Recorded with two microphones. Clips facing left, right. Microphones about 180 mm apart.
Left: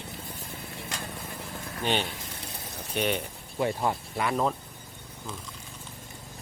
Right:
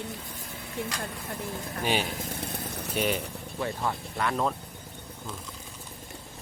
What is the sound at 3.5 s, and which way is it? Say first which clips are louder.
Speech: left 4 dB; 20° left (ahead or behind).